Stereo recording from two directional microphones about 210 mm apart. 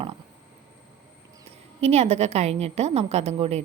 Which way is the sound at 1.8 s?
30° right (ahead or behind).